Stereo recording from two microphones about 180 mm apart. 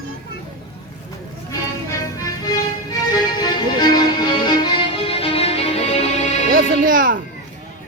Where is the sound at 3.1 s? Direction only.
20° left (ahead or behind).